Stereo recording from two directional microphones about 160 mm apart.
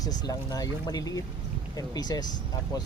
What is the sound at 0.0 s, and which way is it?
Speech, 20° left (ahead or behind).